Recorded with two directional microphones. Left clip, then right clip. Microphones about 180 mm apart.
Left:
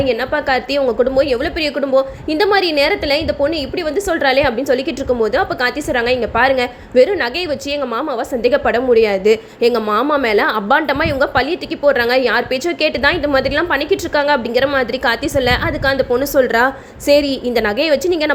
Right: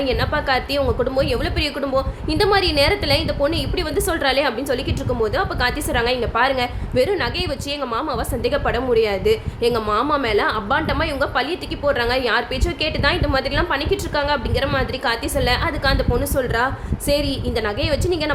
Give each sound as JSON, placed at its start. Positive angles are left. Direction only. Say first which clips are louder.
{"t": 0.0, "sound": "a woman's voice", "louder": "left 4 dB", "side_deg": 20}
{"t": 8.4, "sound": "a woman's voice", "louder": "left 7 dB", "side_deg": 25}